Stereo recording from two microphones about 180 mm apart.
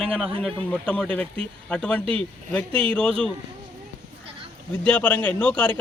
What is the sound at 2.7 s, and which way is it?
Speech, 30° right (ahead or behind).